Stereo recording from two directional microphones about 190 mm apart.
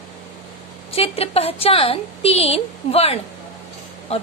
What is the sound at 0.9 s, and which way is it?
A woman's voice, 30° left (ahead or behind).